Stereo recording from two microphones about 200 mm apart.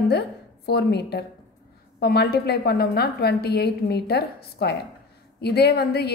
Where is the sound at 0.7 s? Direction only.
55° left (ahead or behind).